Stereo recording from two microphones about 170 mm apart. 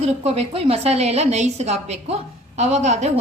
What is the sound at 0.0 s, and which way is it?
A woman's voice, 40° right (ahead or behind).